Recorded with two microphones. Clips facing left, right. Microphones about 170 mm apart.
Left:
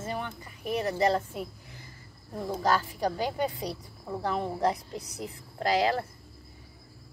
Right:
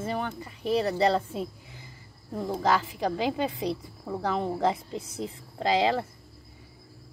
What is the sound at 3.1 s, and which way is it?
Speech, 20° right (ahead or behind).